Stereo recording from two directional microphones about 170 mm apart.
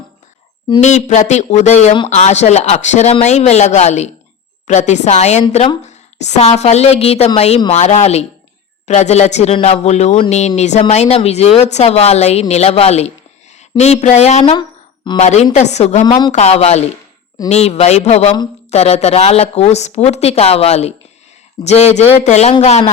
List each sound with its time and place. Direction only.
0.8 s a woman's voice: 45° left (ahead or behind); by 15.2 s 25° left (ahead or behind)
15.2 s speech: 40° left (ahead or behind)